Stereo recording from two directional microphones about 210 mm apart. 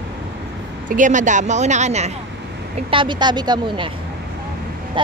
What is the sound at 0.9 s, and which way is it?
A woman's voice, 35° right (ahead or behind).